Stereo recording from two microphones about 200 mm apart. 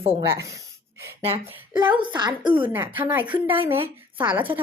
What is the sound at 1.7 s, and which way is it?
Speech, 25° right (ahead or behind).